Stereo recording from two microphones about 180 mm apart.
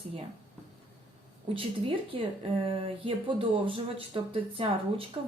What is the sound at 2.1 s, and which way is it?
Speech, 30° right (ahead or behind).